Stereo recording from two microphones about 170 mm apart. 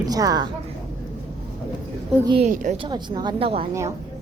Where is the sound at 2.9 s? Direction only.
25° right (ahead or behind).